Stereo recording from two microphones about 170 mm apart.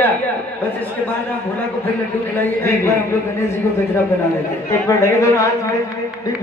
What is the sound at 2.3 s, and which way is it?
Speech, 15° left (ahead or behind).